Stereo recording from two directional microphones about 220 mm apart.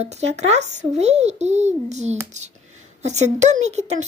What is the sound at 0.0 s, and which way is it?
A child's voice, 30° right (ahead or behind).